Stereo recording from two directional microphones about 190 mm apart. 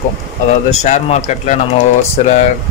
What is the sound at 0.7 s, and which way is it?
Speech, 40° left (ahead or behind).